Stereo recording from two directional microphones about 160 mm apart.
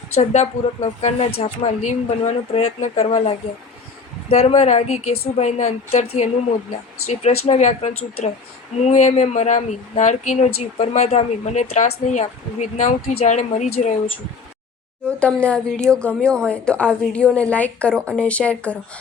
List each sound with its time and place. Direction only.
0.2 s speech: 45° left (ahead or behind)
15.0 s speech: 5° left (ahead or behind)